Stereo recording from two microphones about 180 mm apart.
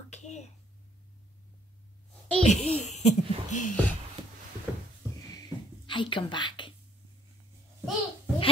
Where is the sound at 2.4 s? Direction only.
35° left (ahead or behind).